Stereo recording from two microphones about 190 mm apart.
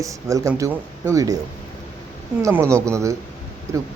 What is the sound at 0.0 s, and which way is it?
Speech, 15° right (ahead or behind).